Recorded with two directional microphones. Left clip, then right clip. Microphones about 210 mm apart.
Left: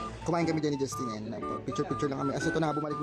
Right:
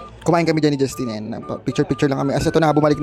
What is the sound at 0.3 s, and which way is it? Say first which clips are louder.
Speech: right 13 dB; 35° right (ahead or behind).